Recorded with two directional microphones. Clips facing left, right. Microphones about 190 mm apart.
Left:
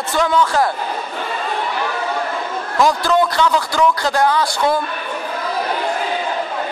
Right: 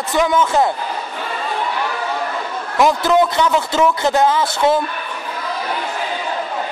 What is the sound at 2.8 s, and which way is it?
Speech, 20° right (ahead or behind).